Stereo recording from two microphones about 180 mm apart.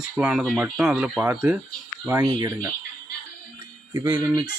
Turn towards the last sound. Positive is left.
turn(degrees=-20)  # may be behind; listen again after turning